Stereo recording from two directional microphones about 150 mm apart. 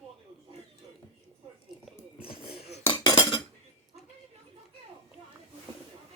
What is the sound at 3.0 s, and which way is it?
Cutlery, 30° left (ahead or behind).